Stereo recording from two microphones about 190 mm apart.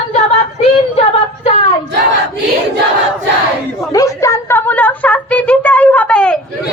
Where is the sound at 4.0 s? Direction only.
15° left (ahead or behind).